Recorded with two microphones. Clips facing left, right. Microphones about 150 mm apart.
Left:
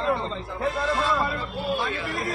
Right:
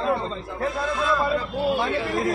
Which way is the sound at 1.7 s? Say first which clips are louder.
Right 3 dB; 70° right (ahead or behind).